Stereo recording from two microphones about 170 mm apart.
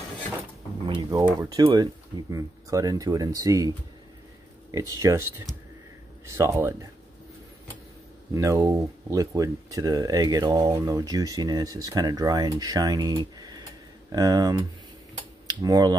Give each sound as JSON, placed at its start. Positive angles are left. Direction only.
{"t": 0.8, "sound": "speech", "side_deg": -25}
{"t": 6.2, "sound": "speech", "side_deg": -15}
{"t": 8.4, "sound": "speech", "side_deg": -20}